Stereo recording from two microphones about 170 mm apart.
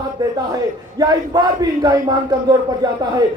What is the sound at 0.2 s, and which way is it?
Speech, 25° right (ahead or behind).